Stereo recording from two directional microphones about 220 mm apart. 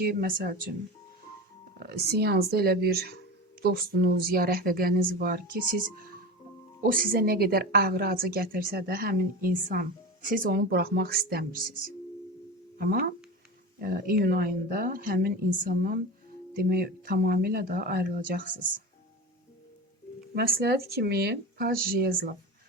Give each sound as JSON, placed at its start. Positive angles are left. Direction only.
{"t": 0.0, "sound": "a woman's voice", "side_deg": -45}
{"t": 1.8, "sound": "a woman's voice", "side_deg": -45}
{"t": 20.3, "sound": "a woman's voice", "side_deg": -45}